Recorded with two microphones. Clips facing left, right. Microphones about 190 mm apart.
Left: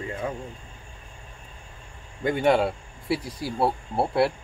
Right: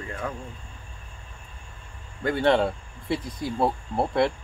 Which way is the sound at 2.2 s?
15° left (ahead or behind).